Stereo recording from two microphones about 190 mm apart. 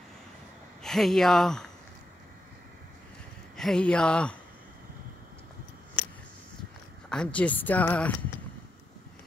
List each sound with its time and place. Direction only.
0.8 s speech: centre (ahead or behind)
3.5 s speech: 5° left (ahead or behind)
7.1 s speech: 5° left (ahead or behind)